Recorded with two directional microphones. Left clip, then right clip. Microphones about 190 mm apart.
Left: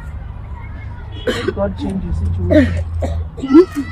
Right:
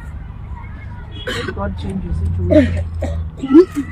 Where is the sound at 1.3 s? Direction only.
45° left (ahead or behind).